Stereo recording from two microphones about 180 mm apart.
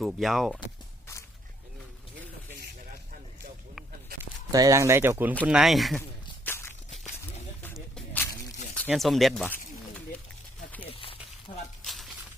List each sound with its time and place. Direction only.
0.0 s speech: centre (ahead or behind)
4.5 s speech: 20° right (ahead or behind)
5.5 s speech: centre (ahead or behind)
6.0 s a sound: 15° left (ahead or behind)
8.7 s speech: 5° left (ahead or behind)
11.5 s a sound: 30° left (ahead or behind)